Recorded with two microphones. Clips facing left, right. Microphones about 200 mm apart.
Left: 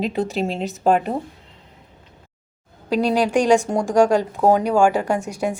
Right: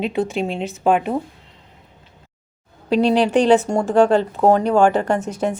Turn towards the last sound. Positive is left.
turn(degrees=10)  # may be behind; listen again after turning